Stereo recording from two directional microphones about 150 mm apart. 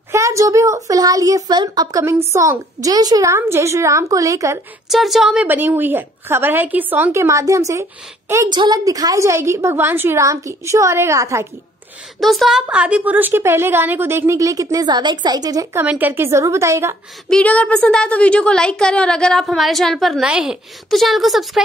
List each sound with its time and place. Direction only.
0.1 s a woman's voice: 20° right (ahead or behind)
4.8 s a woman's voice: centre (ahead or behind); by 11.4 s 20° right (ahead or behind)
12.2 s a woman's voice: centre (ahead or behind); by 15.8 s 25° right (ahead or behind)
15.8 s a woman's voice: 10° right (ahead or behind)
17.3 s a woman's voice: 10° left (ahead or behind)